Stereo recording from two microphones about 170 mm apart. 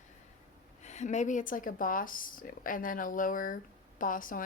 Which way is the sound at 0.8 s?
45° left (ahead or behind).